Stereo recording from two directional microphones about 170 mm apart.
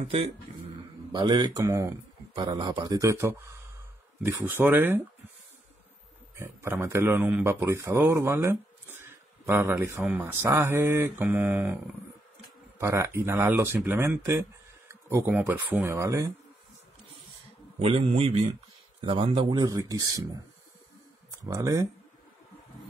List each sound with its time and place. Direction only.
1.1 s speech: 25° right (ahead or behind)
6.3 s speech: 15° right (ahead or behind)
14.9 s insect: 15° right (ahead or behind)
15.4 s speech: 15° right (ahead or behind)
17.7 s a man's voice: 35° right (ahead or behind); by 20.2 s 20° right (ahead or behind)
21.5 s speech: 20° right (ahead or behind)